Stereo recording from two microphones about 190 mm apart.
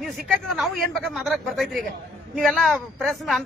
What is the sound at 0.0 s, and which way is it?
A man's voice, centre (ahead or behind).